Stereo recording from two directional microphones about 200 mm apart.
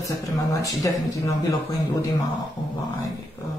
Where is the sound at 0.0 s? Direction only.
15° left (ahead or behind).